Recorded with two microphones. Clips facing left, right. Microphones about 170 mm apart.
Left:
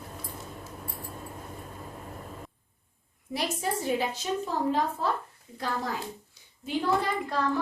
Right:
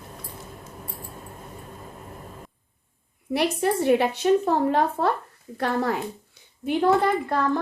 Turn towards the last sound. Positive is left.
turn(degrees=-55)  # may be behind; listen again after turning